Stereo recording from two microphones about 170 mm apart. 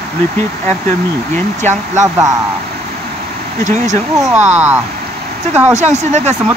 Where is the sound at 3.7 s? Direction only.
45° right (ahead or behind).